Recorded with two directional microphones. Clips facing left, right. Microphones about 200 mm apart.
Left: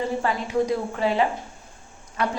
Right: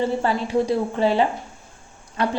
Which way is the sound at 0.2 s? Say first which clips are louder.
Right 2 dB; 30° right (ahead or behind).